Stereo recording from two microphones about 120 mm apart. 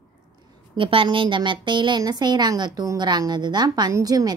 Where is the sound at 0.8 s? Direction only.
45° right (ahead or behind).